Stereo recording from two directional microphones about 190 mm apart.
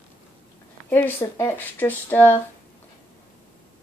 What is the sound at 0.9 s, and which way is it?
A woman's voice, 10° left (ahead or behind).